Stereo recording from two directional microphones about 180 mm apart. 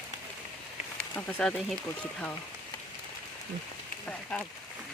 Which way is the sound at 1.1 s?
10° left (ahead or behind).